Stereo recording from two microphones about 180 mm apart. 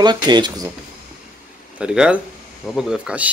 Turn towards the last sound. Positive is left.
turn(degrees=-5)  # may be behind; listen again after turning